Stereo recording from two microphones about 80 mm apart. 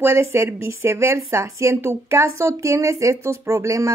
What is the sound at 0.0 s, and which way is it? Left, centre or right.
Speech, right.